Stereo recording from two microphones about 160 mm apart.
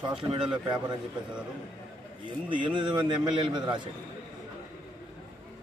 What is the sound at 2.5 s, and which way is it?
A man's voice, 30° right (ahead or behind).